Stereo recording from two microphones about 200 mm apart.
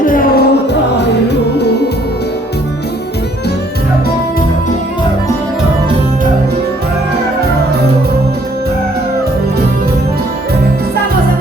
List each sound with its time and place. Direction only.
0.0 s music: 45° left (ahead or behind)